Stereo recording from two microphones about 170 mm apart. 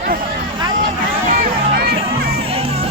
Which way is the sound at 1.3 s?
60° right (ahead or behind).